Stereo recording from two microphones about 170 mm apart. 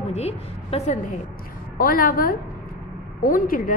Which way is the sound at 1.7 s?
60° left (ahead or behind).